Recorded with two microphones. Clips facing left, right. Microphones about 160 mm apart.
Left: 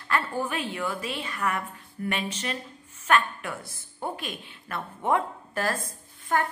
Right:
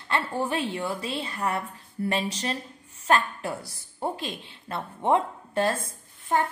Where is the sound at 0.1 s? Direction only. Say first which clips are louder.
Right 1 dB; 30° right (ahead or behind).